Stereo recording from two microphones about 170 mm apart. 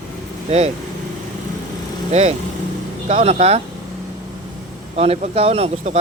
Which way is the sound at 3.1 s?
40° right (ahead or behind).